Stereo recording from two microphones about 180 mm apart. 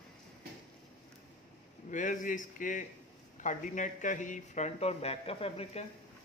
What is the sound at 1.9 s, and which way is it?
A man's voice, 45° left (ahead or behind).